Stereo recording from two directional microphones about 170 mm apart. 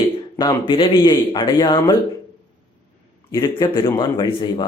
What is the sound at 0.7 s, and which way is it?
Speech, 25° left (ahead or behind).